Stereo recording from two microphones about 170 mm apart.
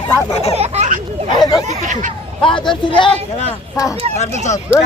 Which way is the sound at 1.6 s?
45° right (ahead or behind).